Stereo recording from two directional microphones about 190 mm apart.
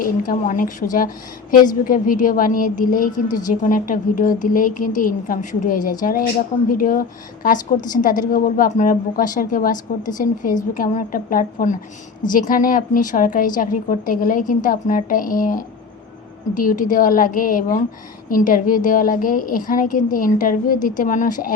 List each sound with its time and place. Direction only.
0.0 s a woman's voice: 45° left (ahead or behind)